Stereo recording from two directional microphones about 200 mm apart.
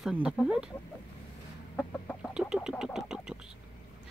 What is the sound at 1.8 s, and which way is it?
Chicken, 5° left (ahead or behind).